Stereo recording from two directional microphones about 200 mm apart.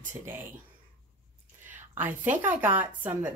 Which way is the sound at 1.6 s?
10° right (ahead or behind).